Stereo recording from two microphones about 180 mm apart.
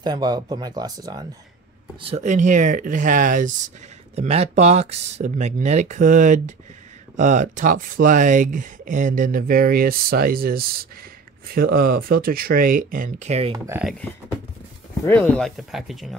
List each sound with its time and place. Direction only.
0.0 s speech: 25° right (ahead or behind)
2.0 s speech: 35° right (ahead or behind)
4.1 s speech: 35° right (ahead or behind)
13.8 s speech: 5° left (ahead or behind)